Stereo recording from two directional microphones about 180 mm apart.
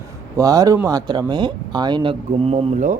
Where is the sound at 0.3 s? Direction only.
20° right (ahead or behind).